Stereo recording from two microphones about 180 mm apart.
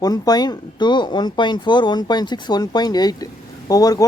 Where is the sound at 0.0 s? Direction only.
20° left (ahead or behind).